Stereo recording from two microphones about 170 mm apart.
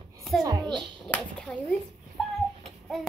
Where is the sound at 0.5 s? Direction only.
25° right (ahead or behind).